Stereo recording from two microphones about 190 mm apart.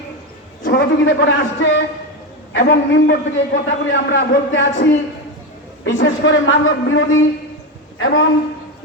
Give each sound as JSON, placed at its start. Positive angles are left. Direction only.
{"t": 0.6, "sound": "a man's voice", "side_deg": 60}
{"t": 5.8, "sound": "a man's voice", "side_deg": 75}